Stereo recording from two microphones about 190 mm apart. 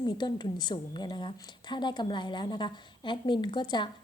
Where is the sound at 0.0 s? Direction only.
25° left (ahead or behind).